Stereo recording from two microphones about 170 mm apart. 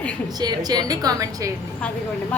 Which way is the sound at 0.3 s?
25° right (ahead or behind).